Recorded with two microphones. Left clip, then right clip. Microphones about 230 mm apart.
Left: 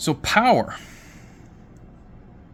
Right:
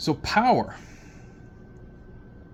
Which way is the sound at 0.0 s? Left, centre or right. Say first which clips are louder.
Left 3 dB; left.